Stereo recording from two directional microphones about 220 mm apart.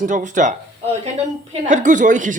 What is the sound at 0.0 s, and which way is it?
Speech, 35° right (ahead or behind).